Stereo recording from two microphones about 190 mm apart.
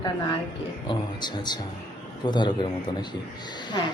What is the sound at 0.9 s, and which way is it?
Speech, 20° left (ahead or behind).